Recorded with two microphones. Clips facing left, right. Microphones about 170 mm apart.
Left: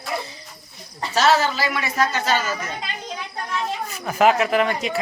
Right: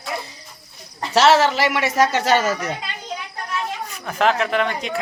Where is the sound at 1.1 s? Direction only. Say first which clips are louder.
Right 4 dB; 80° right.